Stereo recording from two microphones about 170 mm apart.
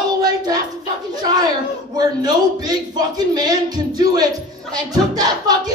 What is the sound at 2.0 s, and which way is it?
Speech, 25° right (ahead or behind).